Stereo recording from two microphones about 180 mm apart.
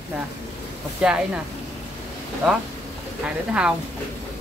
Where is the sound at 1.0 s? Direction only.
5° right (ahead or behind).